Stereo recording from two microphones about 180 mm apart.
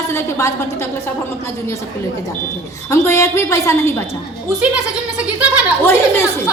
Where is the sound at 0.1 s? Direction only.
15° left (ahead or behind).